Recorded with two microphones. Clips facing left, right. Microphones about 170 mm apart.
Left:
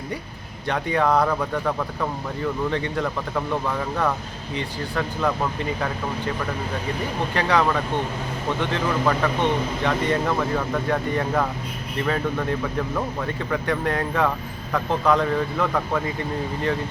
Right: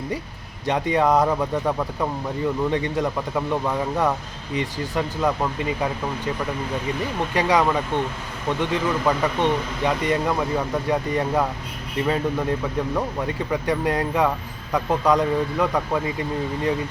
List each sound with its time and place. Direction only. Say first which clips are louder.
0.7 s speech: right 2 dB; 20° right (ahead or behind)
7.3 s speech: right 1 dB; 15° right (ahead or behind)
9.0 s speech: right 1 dB; 15° right (ahead or behind)